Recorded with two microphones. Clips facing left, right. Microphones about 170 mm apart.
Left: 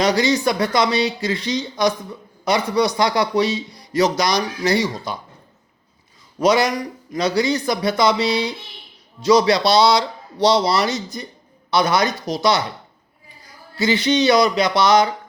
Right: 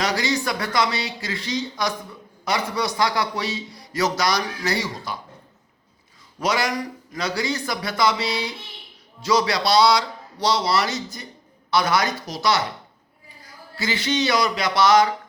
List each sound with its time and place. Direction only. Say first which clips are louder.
0.0 s speech: left 6 dB; 20° left (ahead or behind)
6.4 s speech: left 7 dB; 20° left (ahead or behind)
13.7 s speech: left 6 dB; 20° left (ahead or behind)